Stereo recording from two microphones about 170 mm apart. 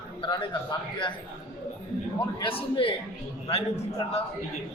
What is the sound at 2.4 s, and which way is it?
A man's voice, 30° left (ahead or behind).